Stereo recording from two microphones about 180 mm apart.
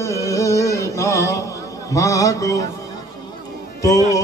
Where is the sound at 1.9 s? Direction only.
20° left (ahead or behind).